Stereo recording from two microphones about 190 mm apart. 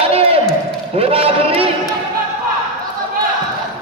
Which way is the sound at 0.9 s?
30° right (ahead or behind).